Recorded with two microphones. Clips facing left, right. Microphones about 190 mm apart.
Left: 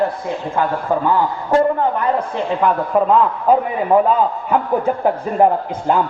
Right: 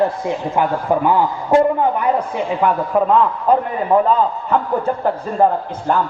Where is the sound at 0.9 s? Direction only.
15° right (ahead or behind).